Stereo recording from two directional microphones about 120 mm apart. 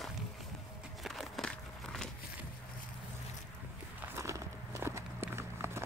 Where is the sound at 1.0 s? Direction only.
Centre (ahead or behind).